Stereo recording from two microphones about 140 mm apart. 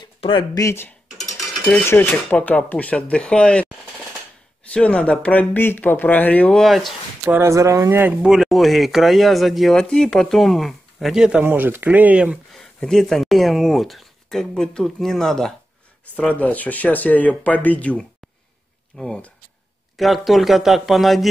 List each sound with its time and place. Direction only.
0.0 s a sound: 35° left (ahead or behind)
0.6 s speech: 20° left (ahead or behind)
1.1 s mechanisms: centre (ahead or behind)
1.9 s speech: 15° left (ahead or behind)
4.7 s speech: 5° left (ahead or behind)
7.2 s speech: 20° right (ahead or behind)
12.5 s speech: 5° left (ahead or behind)